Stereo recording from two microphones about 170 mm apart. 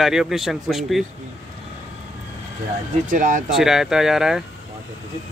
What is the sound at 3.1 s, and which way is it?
Speech, 50° right (ahead or behind).